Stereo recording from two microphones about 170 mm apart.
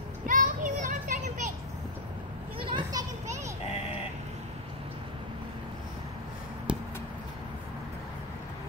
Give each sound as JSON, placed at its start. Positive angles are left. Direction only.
{"t": 0.3, "sound": "children playing", "side_deg": -50}
{"t": 2.6, "sound": "children playing", "side_deg": -25}
{"t": 6.7, "sound": "a sound", "side_deg": -5}